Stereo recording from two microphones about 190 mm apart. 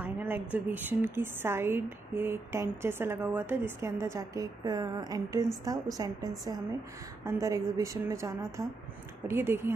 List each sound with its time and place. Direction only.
0.0 s a woman's voice: 10° right (ahead or behind)